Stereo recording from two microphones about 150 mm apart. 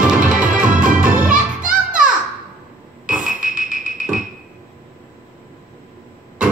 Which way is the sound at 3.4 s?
65° right (ahead or behind).